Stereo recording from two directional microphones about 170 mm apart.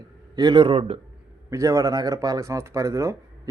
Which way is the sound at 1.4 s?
15° right (ahead or behind).